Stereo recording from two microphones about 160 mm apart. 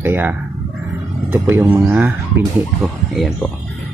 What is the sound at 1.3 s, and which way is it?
Speech, 15° right (ahead or behind).